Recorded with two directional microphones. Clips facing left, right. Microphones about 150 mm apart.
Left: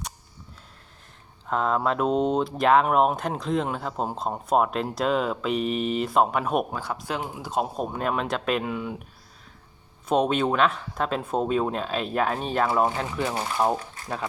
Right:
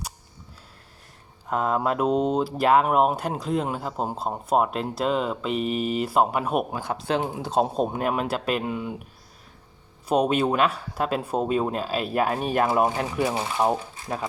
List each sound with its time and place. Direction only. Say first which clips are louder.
1.5 s speech: even; 10° right (ahead or behind)
6.9 s speech: right 8 dB; 30° right (ahead or behind)
8.0 s speech: right 1 dB; 5° right (ahead or behind)
10.1 s speech: right 1 dB; 10° right (ahead or behind)